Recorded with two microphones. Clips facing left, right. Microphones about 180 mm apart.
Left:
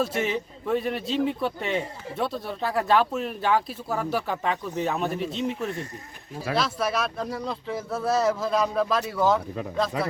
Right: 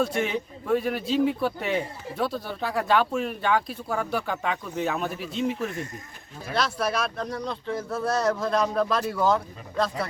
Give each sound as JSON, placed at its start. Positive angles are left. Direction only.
{"t": 0.0, "sound": "speech", "side_deg": 5}
{"t": 10.0, "sound": "speech", "side_deg": 70}